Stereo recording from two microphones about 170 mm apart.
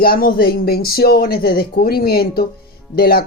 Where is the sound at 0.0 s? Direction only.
60° left (ahead or behind).